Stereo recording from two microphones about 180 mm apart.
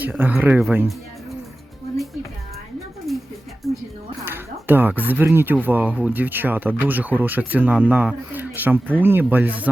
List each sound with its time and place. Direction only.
0.0 s speech: 10° right (ahead or behind)
3.1 s a sound: centre (ahead or behind)
4.3 s speech: 10° right (ahead or behind)